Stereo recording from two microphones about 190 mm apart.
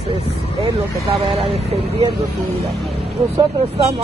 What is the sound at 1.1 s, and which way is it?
Speech, centre (ahead or behind).